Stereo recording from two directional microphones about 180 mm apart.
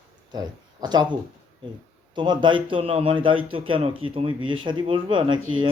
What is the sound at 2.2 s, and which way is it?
A man's voice, 25° right (ahead or behind).